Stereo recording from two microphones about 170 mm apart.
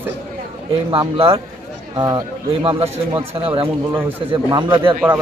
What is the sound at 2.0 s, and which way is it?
Speech, 25° right (ahead or behind).